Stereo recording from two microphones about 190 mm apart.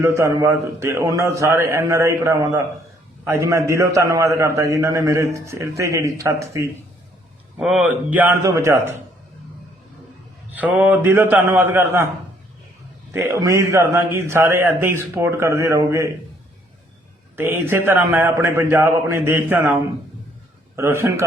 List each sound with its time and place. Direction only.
0.0 s a man's voice: 15° right (ahead or behind)
7.5 s a man's voice: 5° right (ahead or behind)
10.5 s a man's voice: 10° right (ahead or behind)
13.1 s a man's voice: 15° right (ahead or behind)
17.3 s a man's voice: 10° right (ahead or behind)
20.7 s a man's voice: 15° right (ahead or behind)